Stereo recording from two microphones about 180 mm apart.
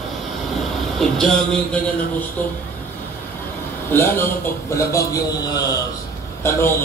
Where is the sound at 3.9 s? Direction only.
10° left (ahead or behind).